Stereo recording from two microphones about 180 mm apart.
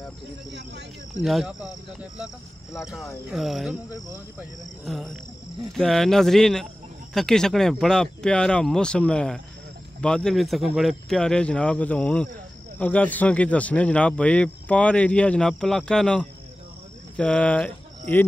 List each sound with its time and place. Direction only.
0.5 s cricket: 75° right (ahead or behind)
1.2 s speech: centre (ahead or behind)
4.8 s speech: centre (ahead or behind)